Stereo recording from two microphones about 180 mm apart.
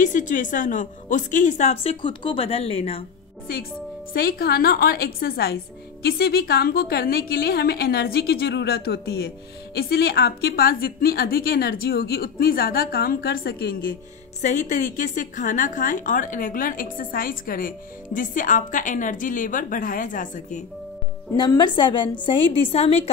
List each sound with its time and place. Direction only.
0.0 s a woman's voice: 45° left (ahead or behind)
4.1 s a woman's voice: 55° left (ahead or behind)
14.4 s a woman's voice: 40° left (ahead or behind)
21.4 s a woman's voice: 25° left (ahead or behind)